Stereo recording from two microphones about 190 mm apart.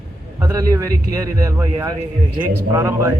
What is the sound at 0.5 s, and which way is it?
Speech, 15° right (ahead or behind).